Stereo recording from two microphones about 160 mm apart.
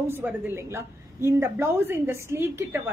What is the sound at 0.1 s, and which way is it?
A woman's voice, 10° right (ahead or behind).